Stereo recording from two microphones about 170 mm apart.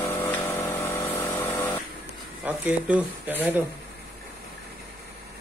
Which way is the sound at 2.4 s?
10° right (ahead or behind).